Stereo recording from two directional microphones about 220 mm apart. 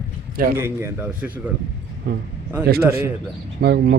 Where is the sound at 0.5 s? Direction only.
10° right (ahead or behind).